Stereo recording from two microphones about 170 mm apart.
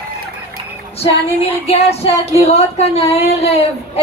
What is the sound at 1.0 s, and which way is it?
Music, 35° left (ahead or behind).